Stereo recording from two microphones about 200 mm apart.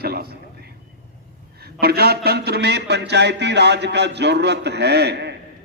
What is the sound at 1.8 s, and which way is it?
A man's voice, 50° right (ahead or behind).